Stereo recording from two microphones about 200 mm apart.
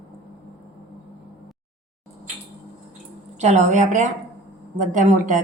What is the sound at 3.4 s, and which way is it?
A woman's voice, 35° right (ahead or behind).